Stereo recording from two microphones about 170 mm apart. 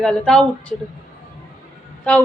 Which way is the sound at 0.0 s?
5° left (ahead or behind).